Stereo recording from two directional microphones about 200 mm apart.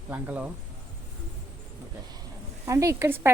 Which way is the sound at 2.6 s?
15° right (ahead or behind).